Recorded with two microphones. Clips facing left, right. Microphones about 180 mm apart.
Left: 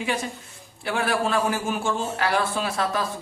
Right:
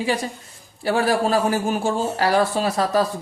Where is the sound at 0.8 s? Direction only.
35° right (ahead or behind).